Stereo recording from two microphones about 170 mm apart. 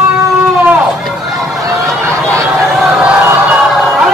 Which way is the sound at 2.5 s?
Centre (ahead or behind).